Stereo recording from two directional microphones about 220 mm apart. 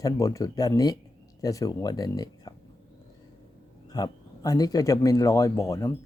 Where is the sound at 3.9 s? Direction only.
15° left (ahead or behind).